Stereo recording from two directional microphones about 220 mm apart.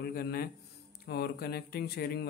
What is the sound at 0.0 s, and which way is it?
Speech, 45° left (ahead or behind).